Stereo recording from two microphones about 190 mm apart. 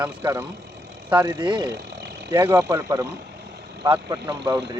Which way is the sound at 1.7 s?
60° right (ahead or behind).